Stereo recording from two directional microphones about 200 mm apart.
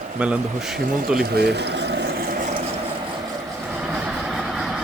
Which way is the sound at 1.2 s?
55° right (ahead or behind).